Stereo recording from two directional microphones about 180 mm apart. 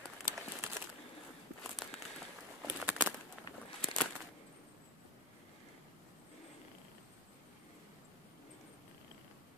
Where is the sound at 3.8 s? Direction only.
5° left (ahead or behind).